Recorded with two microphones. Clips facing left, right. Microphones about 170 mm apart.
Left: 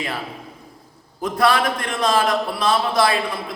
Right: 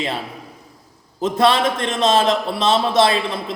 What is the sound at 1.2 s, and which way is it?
A man's voice, 25° right (ahead or behind).